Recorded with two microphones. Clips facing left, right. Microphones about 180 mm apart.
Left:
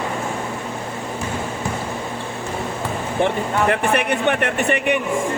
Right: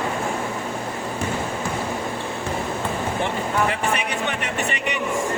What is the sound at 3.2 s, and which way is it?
Speech, 60° left (ahead or behind).